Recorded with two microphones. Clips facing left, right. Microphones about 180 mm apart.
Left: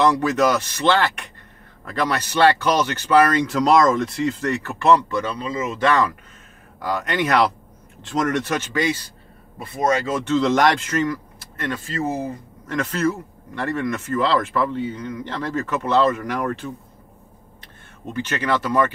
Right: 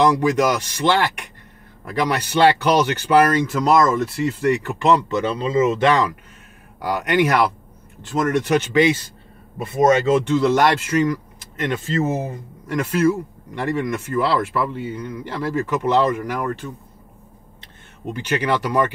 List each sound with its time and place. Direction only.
0.0 s speech: 15° right (ahead or behind)
16.3 s speech: 5° right (ahead or behind)
17.6 s speech: 15° right (ahead or behind)